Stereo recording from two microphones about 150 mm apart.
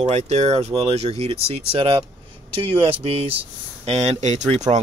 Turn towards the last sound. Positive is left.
turn(degrees=-50)  # may be behind; listen again after turning